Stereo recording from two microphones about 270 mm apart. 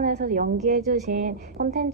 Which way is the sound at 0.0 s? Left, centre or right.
Right.